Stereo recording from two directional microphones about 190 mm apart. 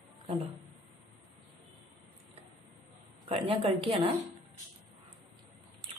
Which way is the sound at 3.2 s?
30° right (ahead or behind).